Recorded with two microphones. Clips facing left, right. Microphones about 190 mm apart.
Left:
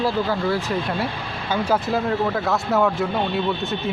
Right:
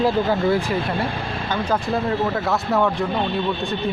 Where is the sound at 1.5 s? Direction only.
10° left (ahead or behind).